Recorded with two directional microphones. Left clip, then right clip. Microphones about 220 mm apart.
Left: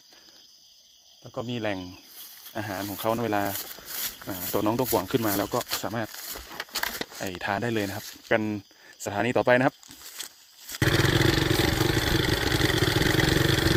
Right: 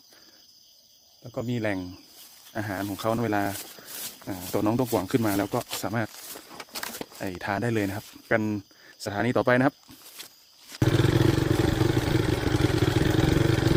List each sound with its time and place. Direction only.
1.2 s speech: 10° right (ahead or behind)
5.8 s speech: 15° right (ahead or behind)
6.1 s a sound: 40° left (ahead or behind)
7.4 s speech: 5° right (ahead or behind)
10.2 s a sound: 45° left (ahead or behind)
10.7 s vehicle: 45° left (ahead or behind)